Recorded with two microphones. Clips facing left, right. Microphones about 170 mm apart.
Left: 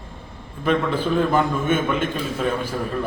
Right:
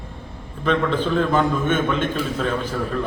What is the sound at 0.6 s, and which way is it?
A man's voice, 10° left (ahead or behind).